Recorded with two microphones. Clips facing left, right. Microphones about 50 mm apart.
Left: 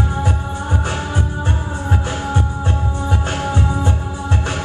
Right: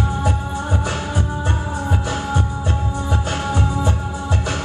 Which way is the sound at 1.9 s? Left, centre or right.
Left.